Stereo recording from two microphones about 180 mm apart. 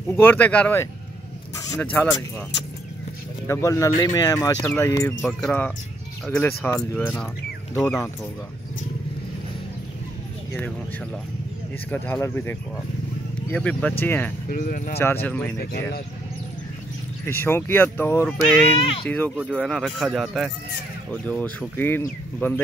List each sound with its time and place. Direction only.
0.1 s speech: 10° left (ahead or behind)
3.4 s speech: 15° left (ahead or behind)
11.9 s speech: 10° left (ahead or behind)
14.5 s speech: 50° left (ahead or behind)
15.0 s speech: 15° left (ahead or behind)
17.3 s speech: 10° left (ahead or behind)
18.8 s speech: 30° left (ahead or behind)
19.0 s speech: 10° left (ahead or behind)